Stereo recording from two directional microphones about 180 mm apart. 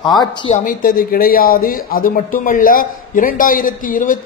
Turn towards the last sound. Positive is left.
turn(degrees=50)  # may be behind; listen again after turning